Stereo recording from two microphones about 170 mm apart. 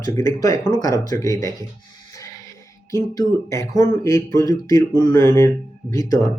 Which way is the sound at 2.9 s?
15° left (ahead or behind).